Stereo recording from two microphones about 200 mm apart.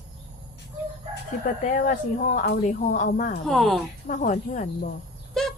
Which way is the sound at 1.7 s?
40° left (ahead or behind).